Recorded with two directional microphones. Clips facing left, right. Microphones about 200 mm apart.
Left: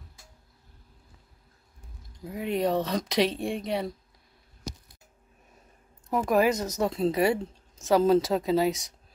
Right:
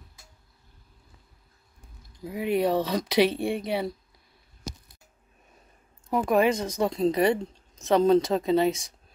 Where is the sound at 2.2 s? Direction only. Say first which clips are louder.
Right 3 dB; 5° right (ahead or behind).